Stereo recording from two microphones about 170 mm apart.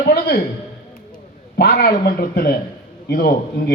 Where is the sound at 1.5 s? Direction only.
70° left (ahead or behind).